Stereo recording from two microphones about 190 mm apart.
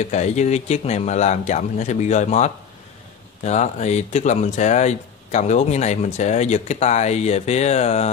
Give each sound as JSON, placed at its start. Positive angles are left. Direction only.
{"t": 0.0, "sound": "speech", "side_deg": 35}